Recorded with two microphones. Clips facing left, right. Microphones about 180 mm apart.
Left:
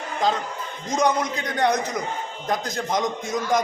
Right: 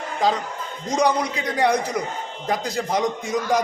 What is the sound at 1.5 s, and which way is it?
A man's voice, 10° right (ahead or behind).